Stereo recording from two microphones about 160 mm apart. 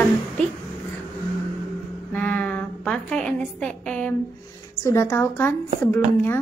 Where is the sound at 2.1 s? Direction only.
10° left (ahead or behind).